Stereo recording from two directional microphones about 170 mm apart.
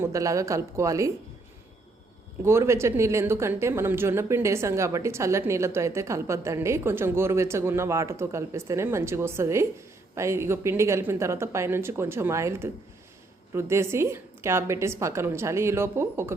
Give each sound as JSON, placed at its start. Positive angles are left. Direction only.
{"t": 0.0, "sound": "speech", "side_deg": -20}
{"t": 2.4, "sound": "a woman's voice", "side_deg": -15}